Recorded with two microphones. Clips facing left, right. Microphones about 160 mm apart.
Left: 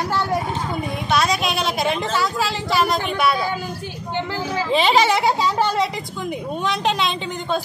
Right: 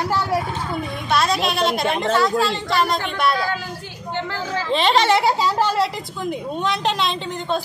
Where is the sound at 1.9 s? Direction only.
60° right (ahead or behind).